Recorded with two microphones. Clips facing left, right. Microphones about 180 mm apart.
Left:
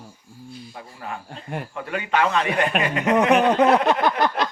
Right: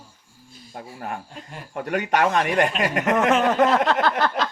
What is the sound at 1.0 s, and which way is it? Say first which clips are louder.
A man's voice: right 1 dB; 50° right (ahead or behind).